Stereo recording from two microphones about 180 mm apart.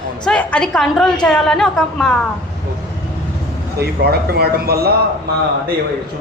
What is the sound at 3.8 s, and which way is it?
Speech, 60° right (ahead or behind).